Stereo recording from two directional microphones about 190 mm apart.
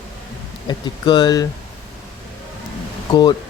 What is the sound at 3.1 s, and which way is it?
Speech, 20° left (ahead or behind).